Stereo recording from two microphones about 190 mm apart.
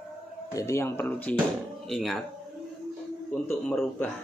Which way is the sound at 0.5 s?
15° left (ahead or behind).